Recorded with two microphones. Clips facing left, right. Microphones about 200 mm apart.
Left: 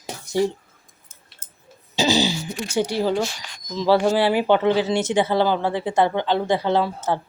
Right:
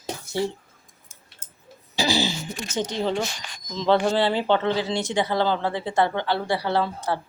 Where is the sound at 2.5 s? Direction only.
10° left (ahead or behind).